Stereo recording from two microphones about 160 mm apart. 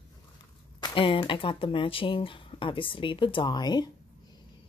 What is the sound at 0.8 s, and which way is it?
Speech, 30° left (ahead or behind).